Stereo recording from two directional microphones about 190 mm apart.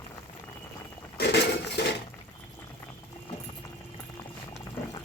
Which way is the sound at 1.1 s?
60° left (ahead or behind).